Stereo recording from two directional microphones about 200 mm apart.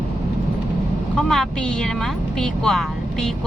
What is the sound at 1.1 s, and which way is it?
A woman's voice, centre (ahead or behind).